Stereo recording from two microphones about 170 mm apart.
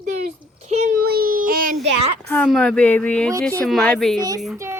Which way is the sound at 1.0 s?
60° right (ahead or behind).